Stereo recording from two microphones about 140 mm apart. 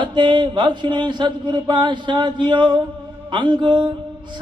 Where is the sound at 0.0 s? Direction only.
35° right (ahead or behind).